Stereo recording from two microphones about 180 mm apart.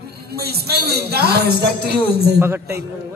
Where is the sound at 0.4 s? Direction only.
60° right (ahead or behind).